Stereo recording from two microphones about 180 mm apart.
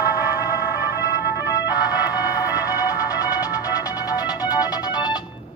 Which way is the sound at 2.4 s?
20° left (ahead or behind).